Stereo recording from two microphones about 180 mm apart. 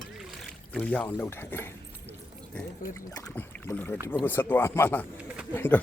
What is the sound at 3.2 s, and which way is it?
Speech, 10° left (ahead or behind).